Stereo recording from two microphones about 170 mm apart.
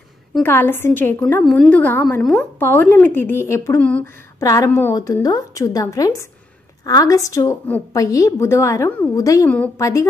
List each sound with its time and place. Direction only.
0.4 s a woman's voice: 10° left (ahead or behind)